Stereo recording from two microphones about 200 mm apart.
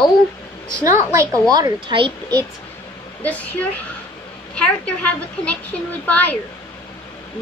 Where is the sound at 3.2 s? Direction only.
5° left (ahead or behind).